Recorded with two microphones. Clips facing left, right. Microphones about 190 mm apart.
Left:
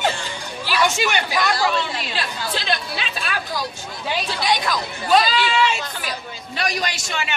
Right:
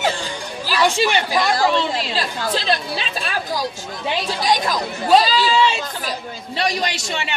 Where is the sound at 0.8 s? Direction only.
30° right (ahead or behind).